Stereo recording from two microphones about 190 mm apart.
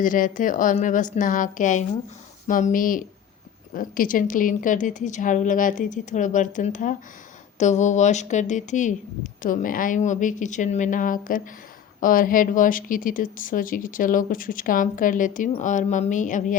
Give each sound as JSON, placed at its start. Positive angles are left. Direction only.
{"t": 0.0, "sound": "speech", "side_deg": 45}